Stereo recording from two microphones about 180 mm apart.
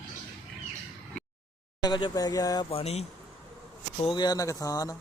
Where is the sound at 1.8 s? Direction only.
25° left (ahead or behind).